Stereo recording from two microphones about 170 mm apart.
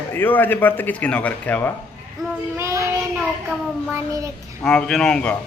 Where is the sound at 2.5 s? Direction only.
15° right (ahead or behind).